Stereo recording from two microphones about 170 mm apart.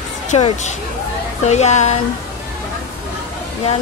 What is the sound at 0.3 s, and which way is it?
Speech, 45° left (ahead or behind).